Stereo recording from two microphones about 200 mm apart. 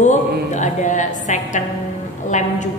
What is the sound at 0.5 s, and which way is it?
A woman's voice, 40° left (ahead or behind).